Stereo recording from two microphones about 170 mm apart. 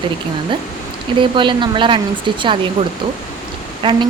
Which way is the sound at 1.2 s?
30° right (ahead or behind).